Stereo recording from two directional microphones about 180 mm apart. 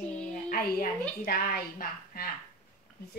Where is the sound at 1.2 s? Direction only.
55° left (ahead or behind).